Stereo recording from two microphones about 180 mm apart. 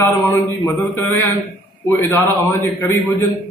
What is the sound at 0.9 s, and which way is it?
A man's voice, 15° left (ahead or behind).